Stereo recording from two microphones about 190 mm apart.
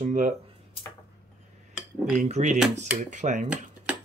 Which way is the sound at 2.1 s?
40° right (ahead or behind).